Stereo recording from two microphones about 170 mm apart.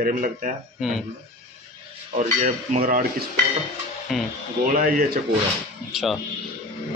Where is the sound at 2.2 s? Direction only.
50° right (ahead or behind).